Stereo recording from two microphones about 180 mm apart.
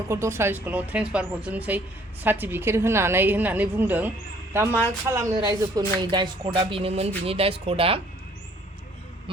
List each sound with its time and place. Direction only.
0.1 s a woman's voice: 15° right (ahead or behind); by 8.0 s 30° right (ahead or behind)